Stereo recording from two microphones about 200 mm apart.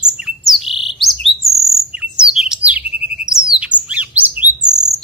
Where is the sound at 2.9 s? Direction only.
50° right (ahead or behind).